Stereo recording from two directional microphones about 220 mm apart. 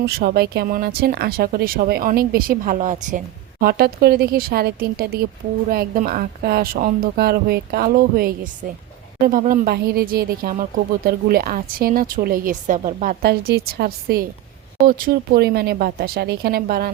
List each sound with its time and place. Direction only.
0.0 s speech: 45° right (ahead or behind)